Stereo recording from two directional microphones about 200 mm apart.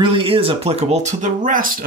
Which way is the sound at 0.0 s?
25° right (ahead or behind).